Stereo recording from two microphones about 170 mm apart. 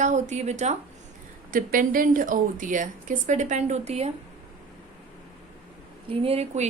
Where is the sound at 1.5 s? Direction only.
50° right (ahead or behind).